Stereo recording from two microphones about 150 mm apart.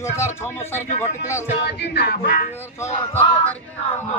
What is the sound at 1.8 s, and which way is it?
Music, 90° left.